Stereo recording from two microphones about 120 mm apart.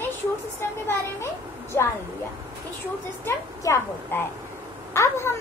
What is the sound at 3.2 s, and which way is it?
A child's voice, 20° left (ahead or behind).